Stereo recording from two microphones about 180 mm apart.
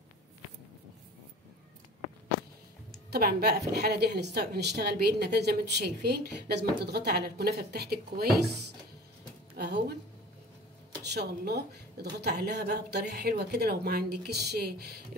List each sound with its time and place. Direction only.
3.1 s a woman's voice: 60° right (ahead or behind)
9.6 s speech: 65° right (ahead or behind)
11.1 s a woman's voice: 65° right (ahead or behind)